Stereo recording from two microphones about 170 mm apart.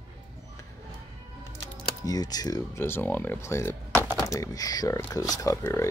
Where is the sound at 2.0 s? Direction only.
20° left (ahead or behind).